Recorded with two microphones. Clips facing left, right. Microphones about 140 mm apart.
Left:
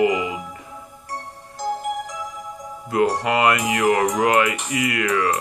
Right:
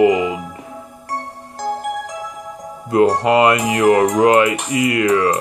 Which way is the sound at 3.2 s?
25° right (ahead or behind).